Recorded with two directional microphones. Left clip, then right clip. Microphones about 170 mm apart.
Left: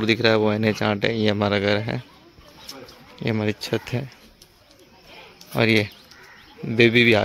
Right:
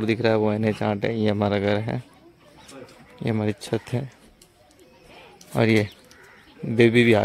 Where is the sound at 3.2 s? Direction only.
15° right (ahead or behind).